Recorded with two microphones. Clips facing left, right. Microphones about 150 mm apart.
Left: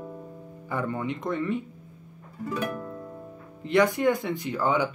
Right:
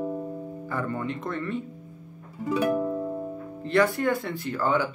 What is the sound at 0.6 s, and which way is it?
Music, 15° left (ahead or behind).